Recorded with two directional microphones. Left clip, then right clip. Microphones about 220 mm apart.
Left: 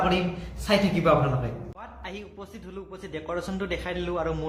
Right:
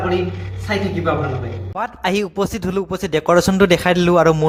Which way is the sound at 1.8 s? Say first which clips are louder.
Right 19 dB; 45° right (ahead or behind).